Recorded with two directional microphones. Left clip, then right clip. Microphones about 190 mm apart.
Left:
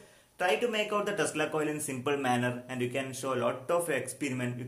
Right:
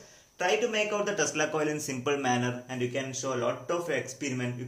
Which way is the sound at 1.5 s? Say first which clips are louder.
Right 2 dB; 5° left (ahead or behind).